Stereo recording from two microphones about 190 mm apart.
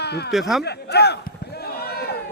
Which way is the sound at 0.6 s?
60° left (ahead or behind).